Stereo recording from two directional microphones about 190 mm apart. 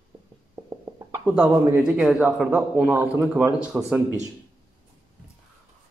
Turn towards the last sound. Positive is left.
turn(degrees=-5)  # may be behind; listen again after turning